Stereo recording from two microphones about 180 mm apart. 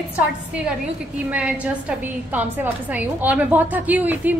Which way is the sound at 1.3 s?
5° right (ahead or behind).